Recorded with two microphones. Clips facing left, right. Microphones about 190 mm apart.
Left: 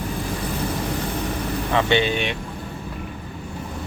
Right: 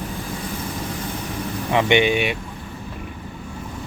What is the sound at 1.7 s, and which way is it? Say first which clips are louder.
Speech: right 3 dB; 15° right (ahead or behind).